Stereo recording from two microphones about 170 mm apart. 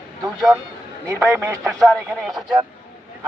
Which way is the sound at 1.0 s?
15° right (ahead or behind).